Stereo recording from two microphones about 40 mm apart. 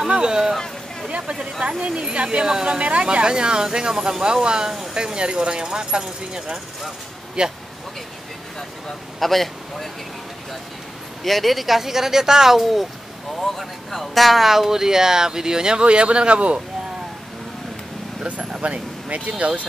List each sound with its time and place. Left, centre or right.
0.0 s speech: centre
9.2 s speech: centre
11.2 s speech: centre
13.4 s speech: centre; by 16.6 s right
18.2 s speech: right